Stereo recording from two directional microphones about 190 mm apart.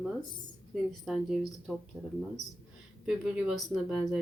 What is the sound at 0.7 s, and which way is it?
Speech, centre (ahead or behind).